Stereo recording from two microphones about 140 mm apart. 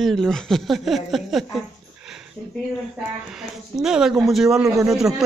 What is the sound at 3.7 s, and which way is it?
Speech, 5° right (ahead or behind).